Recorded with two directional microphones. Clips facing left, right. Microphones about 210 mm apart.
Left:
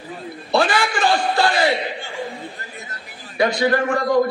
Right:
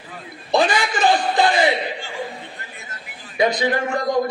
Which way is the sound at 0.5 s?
15° right (ahead or behind).